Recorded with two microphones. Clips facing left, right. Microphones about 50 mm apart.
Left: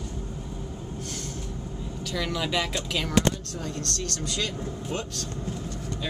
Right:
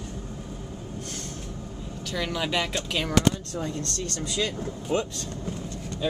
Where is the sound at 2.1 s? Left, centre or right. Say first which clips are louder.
Right 1 dB; centre.